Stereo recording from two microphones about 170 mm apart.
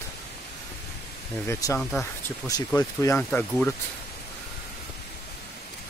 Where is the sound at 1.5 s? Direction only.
15° left (ahead or behind).